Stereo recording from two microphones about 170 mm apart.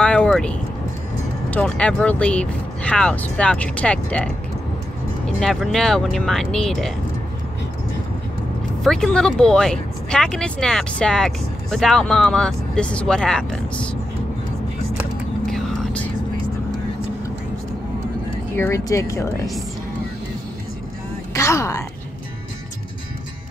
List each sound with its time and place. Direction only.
0.0 s vehicle: 5° left (ahead or behind)
1.5 s speech: 5° left (ahead or behind)
5.4 s speech: centre (ahead or behind)
8.8 s speech: 5° left (ahead or behind)
15.4 s vehicle: centre (ahead or behind)
18.5 s speech: 15° left (ahead or behind)
21.3 s speech: 15° left (ahead or behind)